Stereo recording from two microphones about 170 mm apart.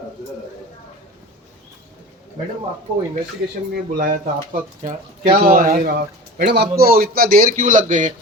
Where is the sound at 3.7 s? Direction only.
60° right (ahead or behind).